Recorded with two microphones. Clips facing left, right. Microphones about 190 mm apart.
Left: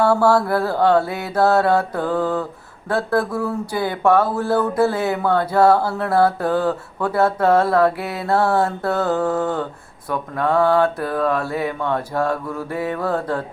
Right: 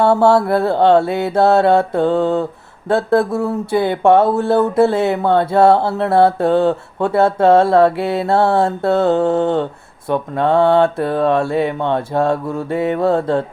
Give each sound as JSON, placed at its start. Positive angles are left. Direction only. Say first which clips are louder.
{"t": 0.0, "sound": "speech", "louder": "right 3 dB", "side_deg": -25}